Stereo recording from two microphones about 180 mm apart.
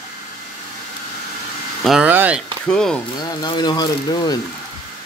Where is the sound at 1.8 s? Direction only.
5° right (ahead or behind).